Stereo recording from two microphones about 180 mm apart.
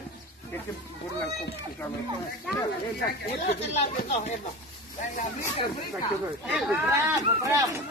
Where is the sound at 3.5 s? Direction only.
35° left (ahead or behind).